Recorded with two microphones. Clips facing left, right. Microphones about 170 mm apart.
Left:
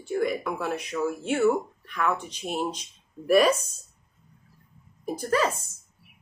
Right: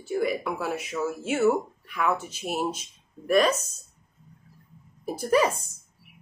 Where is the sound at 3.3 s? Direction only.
10° left (ahead or behind).